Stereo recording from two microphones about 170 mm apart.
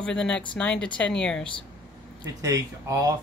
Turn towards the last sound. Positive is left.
turn(degrees=-20)  # may be behind; listen again after turning